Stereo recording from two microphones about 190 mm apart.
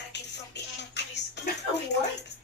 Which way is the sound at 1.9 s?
65° left (ahead or behind).